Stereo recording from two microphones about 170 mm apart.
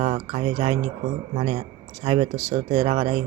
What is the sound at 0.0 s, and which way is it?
Speech, 35° right (ahead or behind).